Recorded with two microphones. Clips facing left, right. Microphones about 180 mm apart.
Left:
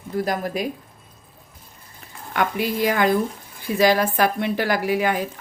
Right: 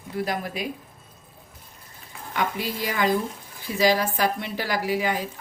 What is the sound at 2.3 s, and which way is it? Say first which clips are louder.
A woman's voice: left 5 dB; 60° left (ahead or behind).